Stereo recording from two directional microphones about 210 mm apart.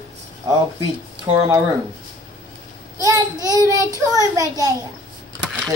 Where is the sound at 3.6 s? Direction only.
15° right (ahead or behind).